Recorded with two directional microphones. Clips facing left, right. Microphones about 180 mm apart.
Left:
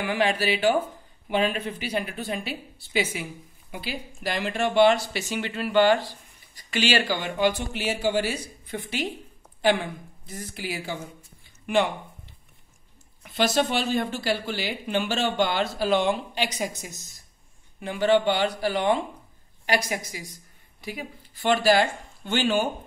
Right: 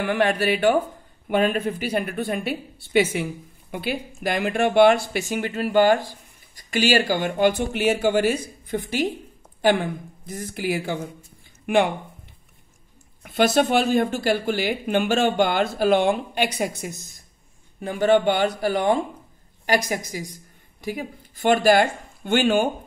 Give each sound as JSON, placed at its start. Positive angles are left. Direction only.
{"t": 0.0, "sound": "speech", "side_deg": -55}
{"t": 10.2, "sound": "speech", "side_deg": -50}
{"t": 13.2, "sound": "speech", "side_deg": -55}
{"t": 17.7, "sound": "speech", "side_deg": -45}